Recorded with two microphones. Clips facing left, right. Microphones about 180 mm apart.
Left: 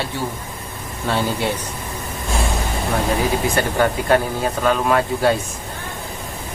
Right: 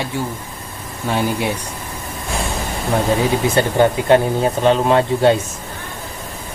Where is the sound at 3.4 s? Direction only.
20° right (ahead or behind).